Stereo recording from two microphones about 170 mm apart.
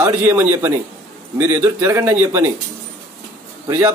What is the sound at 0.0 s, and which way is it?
A man's voice, 10° right (ahead or behind).